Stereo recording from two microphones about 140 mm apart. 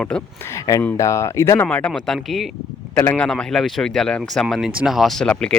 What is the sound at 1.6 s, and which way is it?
Speech, 5° left (ahead or behind).